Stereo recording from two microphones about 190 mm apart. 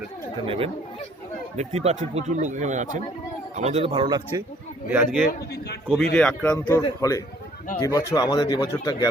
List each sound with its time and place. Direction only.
0.4 s speech: 30° right (ahead or behind)
4.9 s a man's voice: 5° right (ahead or behind)
6.1 s speech: 5° left (ahead or behind)